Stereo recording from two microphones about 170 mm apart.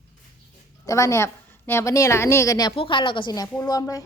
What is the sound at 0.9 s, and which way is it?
A woman's voice, 15° left (ahead or behind).